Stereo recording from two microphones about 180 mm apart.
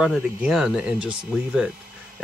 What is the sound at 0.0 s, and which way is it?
Speech, 5° right (ahead or behind).